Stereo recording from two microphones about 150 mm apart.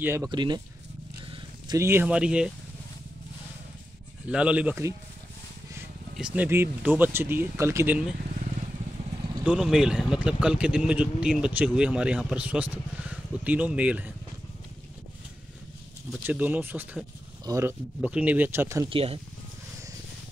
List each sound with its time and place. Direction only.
0.0 s speech: 15° right (ahead or behind)
0.3 s speech: 30° right (ahead or behind)
1.8 s speech: 15° right (ahead or behind)
4.3 s speech: 10° right (ahead or behind)
6.1 s speech: 10° right (ahead or behind)
9.4 s speech: 5° right (ahead or behind)
16.3 s speech: 10° right (ahead or behind)
18.9 s speech: 40° right (ahead or behind)